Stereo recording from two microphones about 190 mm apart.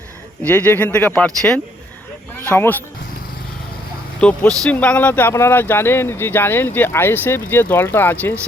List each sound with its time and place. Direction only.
0.4 s speech: 10° left (ahead or behind)
4.2 s speech: 5° left (ahead or behind)